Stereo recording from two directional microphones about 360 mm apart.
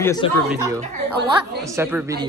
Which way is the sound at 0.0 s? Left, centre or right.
Centre.